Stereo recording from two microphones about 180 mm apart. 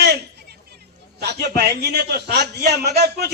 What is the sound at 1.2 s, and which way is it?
A man's voice, 65° right (ahead or behind).